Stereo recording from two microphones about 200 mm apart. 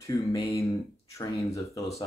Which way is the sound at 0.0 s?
15° left (ahead or behind).